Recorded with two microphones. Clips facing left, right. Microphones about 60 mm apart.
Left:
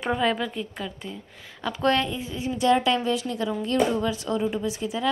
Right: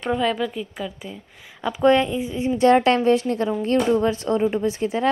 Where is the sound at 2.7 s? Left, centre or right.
Right.